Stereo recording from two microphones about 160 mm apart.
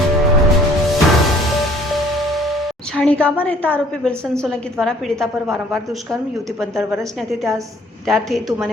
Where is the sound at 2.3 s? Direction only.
Centre (ahead or behind).